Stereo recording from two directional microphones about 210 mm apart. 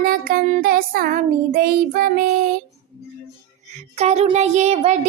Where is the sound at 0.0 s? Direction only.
40° right (ahead or behind).